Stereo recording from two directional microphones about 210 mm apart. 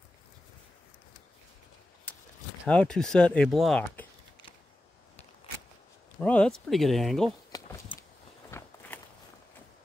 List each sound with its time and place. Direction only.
2.6 s speech: 5° left (ahead or behind)
6.1 s speech: 5° left (ahead or behind)
7.5 s a sound: 15° left (ahead or behind)
8.5 s walk: 10° left (ahead or behind)